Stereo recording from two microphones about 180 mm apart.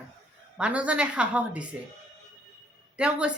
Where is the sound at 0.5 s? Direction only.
5° right (ahead or behind).